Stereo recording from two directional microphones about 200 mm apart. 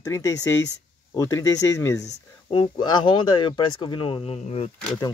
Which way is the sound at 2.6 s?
20° left (ahead or behind).